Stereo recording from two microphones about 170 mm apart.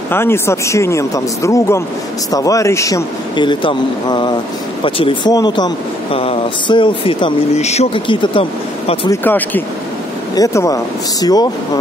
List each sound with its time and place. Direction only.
0.1 s a man's voice: 15° left (ahead or behind); by 9.1 s 30° left (ahead or behind)
9.1 s a man's voice: 10° left (ahead or behind)